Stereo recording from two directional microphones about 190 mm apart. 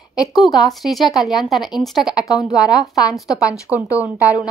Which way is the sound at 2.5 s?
20° left (ahead or behind).